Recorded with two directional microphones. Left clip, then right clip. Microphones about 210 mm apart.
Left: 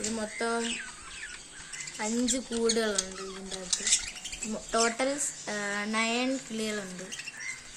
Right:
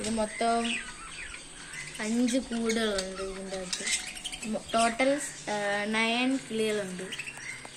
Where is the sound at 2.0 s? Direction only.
50° left (ahead or behind).